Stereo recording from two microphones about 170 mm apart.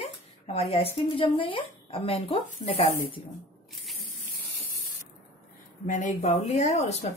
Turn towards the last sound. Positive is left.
turn(degrees=40)  # may be behind; listen again after turning